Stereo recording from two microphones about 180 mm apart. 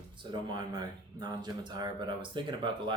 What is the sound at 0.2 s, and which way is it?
Speech, 25° right (ahead or behind).